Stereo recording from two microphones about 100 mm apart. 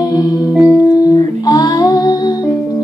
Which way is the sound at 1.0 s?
40° left (ahead or behind).